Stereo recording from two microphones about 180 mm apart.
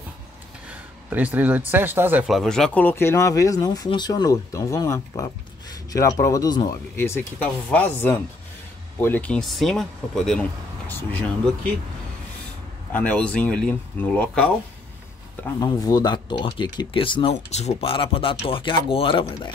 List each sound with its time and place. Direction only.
1.1 s speech: 10° right (ahead or behind); by 6.8 s 20° left (ahead or behind)
7.7 s speech: 10° left (ahead or behind)
12.9 s speech: 5° left (ahead or behind)
15.6 s speech: 20° left (ahead or behind)